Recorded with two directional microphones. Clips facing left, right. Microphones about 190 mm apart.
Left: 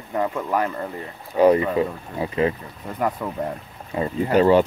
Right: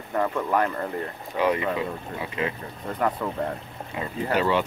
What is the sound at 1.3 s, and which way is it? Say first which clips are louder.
Speech: left 8 dB; 35° left (ahead or behind).